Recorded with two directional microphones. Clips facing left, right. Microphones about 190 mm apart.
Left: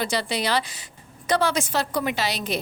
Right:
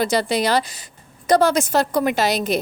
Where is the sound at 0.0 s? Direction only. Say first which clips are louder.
Right 6 dB; 45° right (ahead or behind).